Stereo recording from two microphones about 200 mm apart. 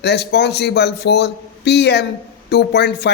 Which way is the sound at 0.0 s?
55° left (ahead or behind).